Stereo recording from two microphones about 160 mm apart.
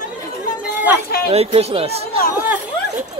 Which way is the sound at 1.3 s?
40° right (ahead or behind).